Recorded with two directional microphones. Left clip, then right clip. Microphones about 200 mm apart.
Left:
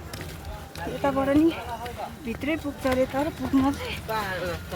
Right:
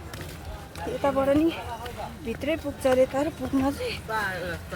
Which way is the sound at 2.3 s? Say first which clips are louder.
Right 1 dB; 15° right (ahead or behind).